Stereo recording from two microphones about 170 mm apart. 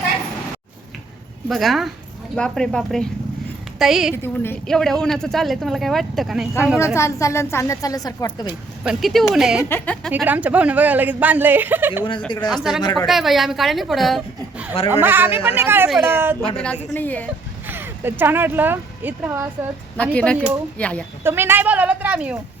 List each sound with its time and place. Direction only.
1.5 s speech: centre (ahead or behind)
4.1 s speech: 15° left (ahead or behind)
6.7 s a woman's voice: 15° left (ahead or behind)
8.8 s speech: centre (ahead or behind)
9.6 s a woman's voice: 10° left (ahead or behind)
10.1 s speech: 10° right (ahead or behind)
12.5 s speech: centre (ahead or behind)
12.8 s a woman's voice: 25° left (ahead or behind)
13.1 s speech: centre (ahead or behind)
14.8 s speech: 10° right (ahead or behind)
16.6 s a woman's voice: 10° left (ahead or behind)
17.7 s speech: 10° right (ahead or behind)
20.0 s a woman's voice: 5° left (ahead or behind)
21.2 s speech: 15° right (ahead or behind)